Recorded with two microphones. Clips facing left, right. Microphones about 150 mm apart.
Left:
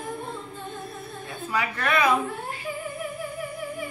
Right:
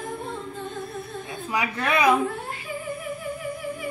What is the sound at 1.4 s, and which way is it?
Speech, 15° right (ahead or behind).